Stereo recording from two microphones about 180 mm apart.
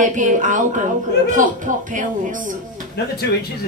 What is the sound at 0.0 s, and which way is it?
Speech, 45° right (ahead or behind).